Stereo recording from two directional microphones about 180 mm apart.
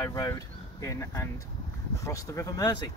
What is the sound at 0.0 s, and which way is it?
Speech, 20° left (ahead or behind).